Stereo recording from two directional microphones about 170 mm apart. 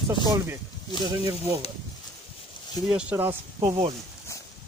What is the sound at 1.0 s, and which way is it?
Speech, 30° right (ahead or behind).